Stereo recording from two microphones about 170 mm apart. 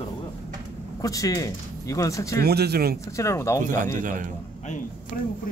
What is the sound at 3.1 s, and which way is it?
Speech, 15° left (ahead or behind).